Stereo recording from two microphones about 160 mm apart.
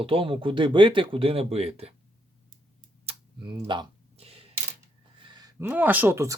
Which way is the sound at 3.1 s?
40° right (ahead or behind).